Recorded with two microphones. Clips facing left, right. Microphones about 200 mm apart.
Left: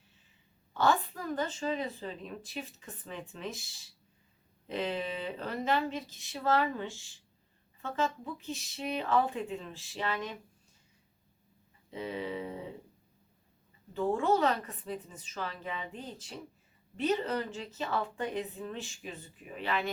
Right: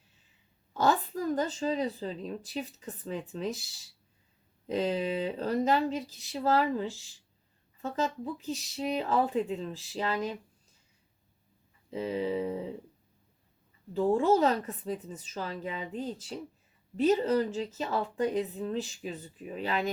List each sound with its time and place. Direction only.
0.7 s a woman's voice: 40° right (ahead or behind)
4.7 s a woman's voice: 40° right (ahead or behind)
11.9 s a woman's voice: 40° right (ahead or behind)
13.9 s a woman's voice: 35° right (ahead or behind)